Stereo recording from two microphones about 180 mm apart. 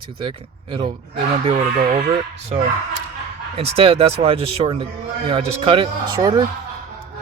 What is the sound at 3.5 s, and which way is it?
A man's voice, 35° right (ahead or behind).